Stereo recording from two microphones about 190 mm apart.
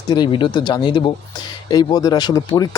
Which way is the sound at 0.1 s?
25° left (ahead or behind).